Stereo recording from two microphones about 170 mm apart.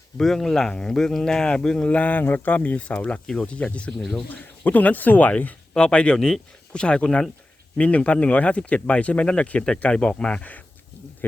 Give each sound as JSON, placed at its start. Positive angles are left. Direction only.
{"t": 0.2, "sound": "speech", "side_deg": 0}